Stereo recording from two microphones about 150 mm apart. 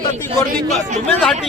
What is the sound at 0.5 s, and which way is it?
Speech, 55° right (ahead or behind).